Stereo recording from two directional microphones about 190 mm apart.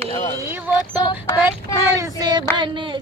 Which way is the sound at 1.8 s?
20° right (ahead or behind).